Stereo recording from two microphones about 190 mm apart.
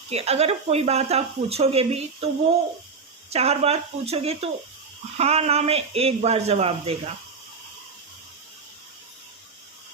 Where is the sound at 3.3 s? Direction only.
35° right (ahead or behind).